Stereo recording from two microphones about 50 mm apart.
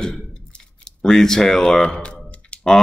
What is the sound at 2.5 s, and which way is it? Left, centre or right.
Typing, left.